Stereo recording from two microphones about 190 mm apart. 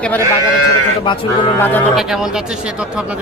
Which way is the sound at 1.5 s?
10° left (ahead or behind).